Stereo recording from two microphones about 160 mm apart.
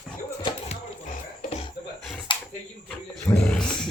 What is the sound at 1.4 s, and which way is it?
Cough, 45° left (ahead or behind).